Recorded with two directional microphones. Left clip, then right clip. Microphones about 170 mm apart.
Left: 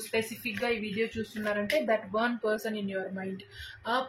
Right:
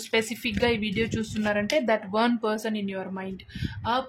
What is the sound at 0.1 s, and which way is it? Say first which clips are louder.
Speech: right 6 dB; 50° right (ahead or behind).